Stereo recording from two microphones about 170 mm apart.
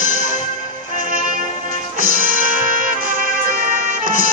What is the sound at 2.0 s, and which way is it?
Music, 55° right (ahead or behind).